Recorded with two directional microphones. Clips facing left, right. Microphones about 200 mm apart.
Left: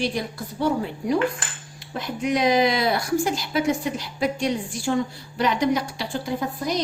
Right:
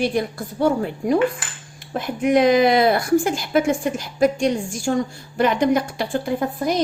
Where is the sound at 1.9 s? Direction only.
50° right (ahead or behind).